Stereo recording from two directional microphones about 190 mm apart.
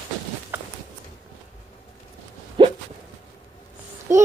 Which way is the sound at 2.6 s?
25° right (ahead or behind).